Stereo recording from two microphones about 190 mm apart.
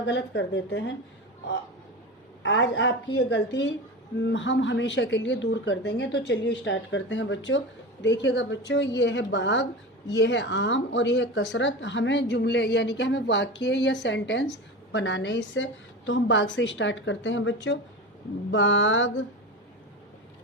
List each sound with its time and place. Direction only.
0.0 s speech: 70° left (ahead or behind)
2.4 s speech: 70° left (ahead or behind)
18.5 s mantra: 75° left (ahead or behind)